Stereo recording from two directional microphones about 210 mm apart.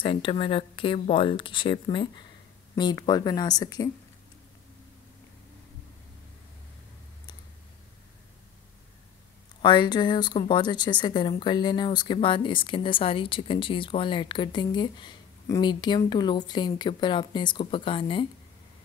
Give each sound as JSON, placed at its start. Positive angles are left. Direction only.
{"t": 0.0, "sound": "speech", "side_deg": 25}
{"t": 9.6, "sound": "speech", "side_deg": 20}